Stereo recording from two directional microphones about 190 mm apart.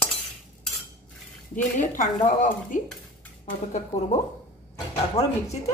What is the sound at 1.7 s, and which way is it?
Speech, 45° left (ahead or behind).